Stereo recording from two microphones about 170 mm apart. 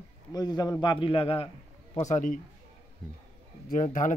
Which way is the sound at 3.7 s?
50° left (ahead or behind).